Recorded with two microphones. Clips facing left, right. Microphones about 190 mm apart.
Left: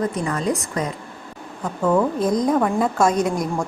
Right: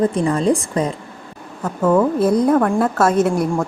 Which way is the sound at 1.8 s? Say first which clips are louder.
Right 4 dB; 5° right (ahead or behind).